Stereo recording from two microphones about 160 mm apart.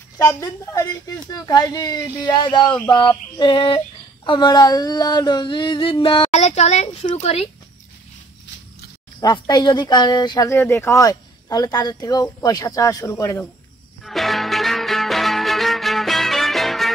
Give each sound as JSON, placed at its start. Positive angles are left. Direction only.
{"t": 0.4, "sound": "speech", "side_deg": 20}
{"t": 2.9, "sound": "a sound", "side_deg": 30}
{"t": 9.2, "sound": "speech", "side_deg": 25}
{"t": 14.0, "sound": "music", "side_deg": 0}